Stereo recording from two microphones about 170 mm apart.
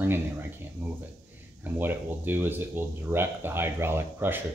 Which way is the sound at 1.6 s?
10° right (ahead or behind).